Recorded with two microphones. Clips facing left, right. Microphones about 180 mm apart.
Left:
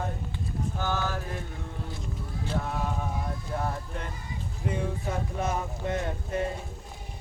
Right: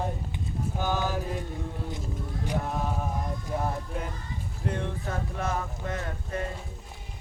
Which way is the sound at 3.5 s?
5° right (ahead or behind).